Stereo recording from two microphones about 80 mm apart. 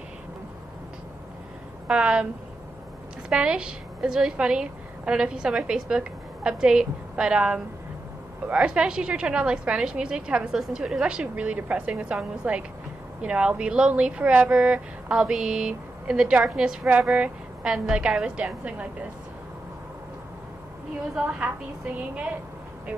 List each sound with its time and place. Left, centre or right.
1.9 s speech: centre
3.3 s a woman's voice: centre
21.1 s speech: centre